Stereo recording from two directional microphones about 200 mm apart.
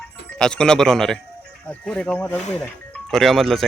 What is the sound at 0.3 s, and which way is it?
Speech, 5° left (ahead or behind).